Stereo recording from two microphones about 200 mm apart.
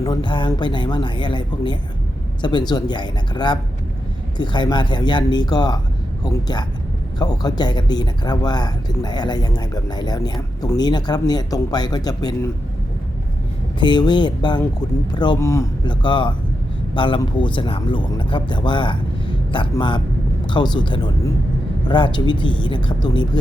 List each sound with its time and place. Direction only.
0.0 s speech: 25° left (ahead or behind)
13.7 s speech: 25° left (ahead or behind)